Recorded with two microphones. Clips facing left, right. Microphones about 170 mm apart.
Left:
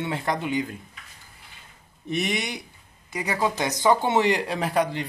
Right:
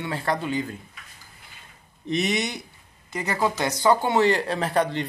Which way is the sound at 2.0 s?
10° left (ahead or behind).